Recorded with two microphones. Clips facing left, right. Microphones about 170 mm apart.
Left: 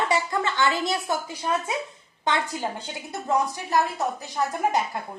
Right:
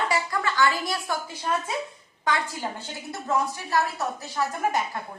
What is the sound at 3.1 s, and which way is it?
Speech, 20° left (ahead or behind).